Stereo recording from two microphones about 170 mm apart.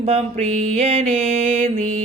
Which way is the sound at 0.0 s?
40° right (ahead or behind).